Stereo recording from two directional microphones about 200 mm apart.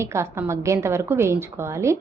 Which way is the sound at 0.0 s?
15° right (ahead or behind).